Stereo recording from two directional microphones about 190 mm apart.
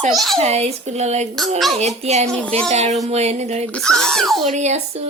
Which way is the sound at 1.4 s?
Centre (ahead or behind).